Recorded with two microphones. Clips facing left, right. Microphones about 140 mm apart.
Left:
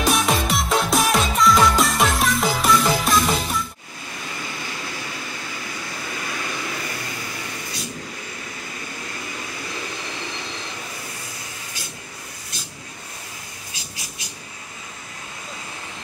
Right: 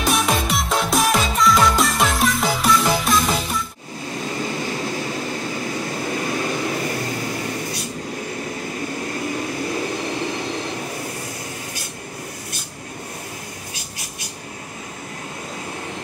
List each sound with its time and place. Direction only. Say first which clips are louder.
0.0 s music: even; centre (ahead or behind)
4.4 s vehicle: right 8 dB; 35° right (ahead or behind)
9.3 s vehicle: right 9 dB; 40° right (ahead or behind)